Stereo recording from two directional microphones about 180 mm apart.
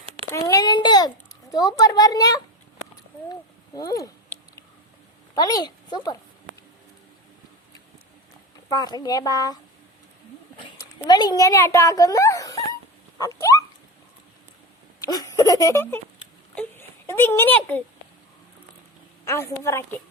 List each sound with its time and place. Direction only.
0.3 s a sound: 20° left (ahead or behind)
3.8 s a sound: 20° left (ahead or behind)
5.3 s a woman's voice: 20° left (ahead or behind)
8.7 s a child's voice: 20° left (ahead or behind)
11.0 s a child's voice: 20° left (ahead or behind)
13.1 s a sound: 20° left (ahead or behind)
15.0 s speech: 20° left (ahead or behind)
16.6 s whimper: 10° left (ahead or behind)
19.2 s a woman's voice: 15° left (ahead or behind)